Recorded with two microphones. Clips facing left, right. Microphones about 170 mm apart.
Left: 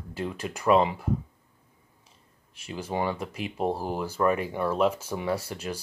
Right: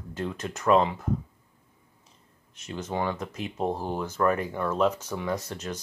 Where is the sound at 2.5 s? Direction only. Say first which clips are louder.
Even; 10° left (ahead or behind).